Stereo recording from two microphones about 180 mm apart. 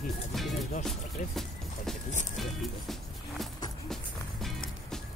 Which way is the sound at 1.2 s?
45° left (ahead or behind).